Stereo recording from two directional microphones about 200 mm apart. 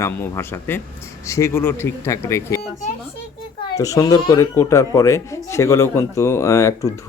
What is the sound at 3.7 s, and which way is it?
Speech, 15° left (ahead or behind).